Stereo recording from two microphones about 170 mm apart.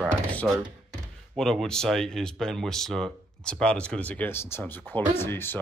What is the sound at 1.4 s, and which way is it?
Speech, 5° left (ahead or behind).